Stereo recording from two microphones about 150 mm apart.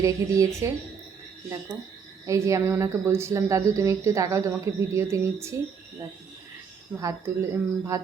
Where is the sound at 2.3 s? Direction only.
20° right (ahead or behind).